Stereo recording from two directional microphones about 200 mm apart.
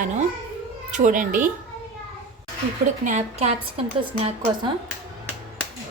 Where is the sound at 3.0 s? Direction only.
35° right (ahead or behind).